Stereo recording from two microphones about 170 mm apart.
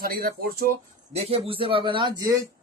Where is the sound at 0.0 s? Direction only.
60° right (ahead or behind).